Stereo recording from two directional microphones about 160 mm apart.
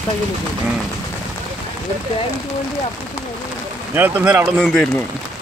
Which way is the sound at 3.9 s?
10° right (ahead or behind).